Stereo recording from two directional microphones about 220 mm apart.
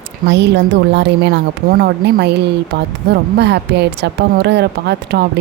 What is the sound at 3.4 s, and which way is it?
A woman's voice, 50° right (ahead or behind).